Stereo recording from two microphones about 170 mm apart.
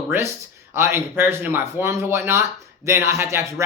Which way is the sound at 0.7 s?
15° right (ahead or behind).